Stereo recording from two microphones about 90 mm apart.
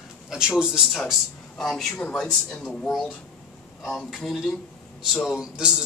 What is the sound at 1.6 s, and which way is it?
A man's voice, 5° left (ahead or behind).